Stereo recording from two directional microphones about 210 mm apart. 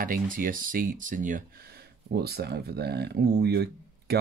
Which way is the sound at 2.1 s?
50° right (ahead or behind).